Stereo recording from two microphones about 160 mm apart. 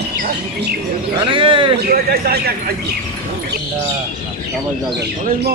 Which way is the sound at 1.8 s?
80° right.